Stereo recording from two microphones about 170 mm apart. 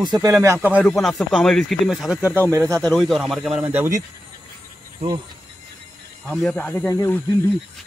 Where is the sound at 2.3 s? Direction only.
15° right (ahead or behind).